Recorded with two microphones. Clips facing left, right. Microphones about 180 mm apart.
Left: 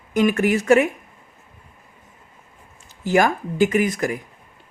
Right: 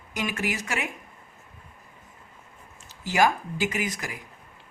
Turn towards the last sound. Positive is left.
turn(degrees=50)  # may be behind; listen again after turning